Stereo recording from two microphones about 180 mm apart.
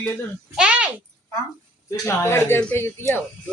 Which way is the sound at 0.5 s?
5° right (ahead or behind).